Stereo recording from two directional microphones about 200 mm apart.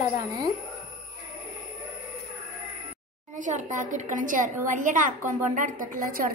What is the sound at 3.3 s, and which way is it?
A woman's voice, 40° right (ahead or behind).